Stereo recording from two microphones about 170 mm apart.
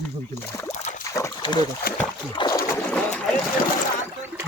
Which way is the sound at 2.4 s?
30° left (ahead or behind).